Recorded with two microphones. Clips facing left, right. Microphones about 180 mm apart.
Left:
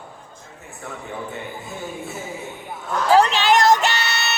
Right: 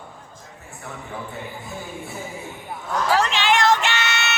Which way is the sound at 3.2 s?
35° left (ahead or behind).